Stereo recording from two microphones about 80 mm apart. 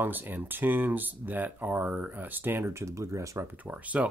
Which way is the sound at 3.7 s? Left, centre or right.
Centre.